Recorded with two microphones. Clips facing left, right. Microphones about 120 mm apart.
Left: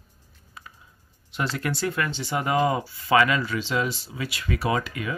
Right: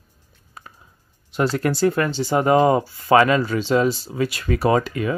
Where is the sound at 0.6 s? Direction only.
45° right (ahead or behind).